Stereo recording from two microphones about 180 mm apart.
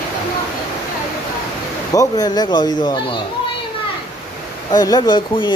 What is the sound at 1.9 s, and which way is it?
Speech, 20° left (ahead or behind).